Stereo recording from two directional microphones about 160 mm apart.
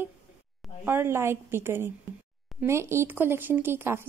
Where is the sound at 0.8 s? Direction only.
15° right (ahead or behind).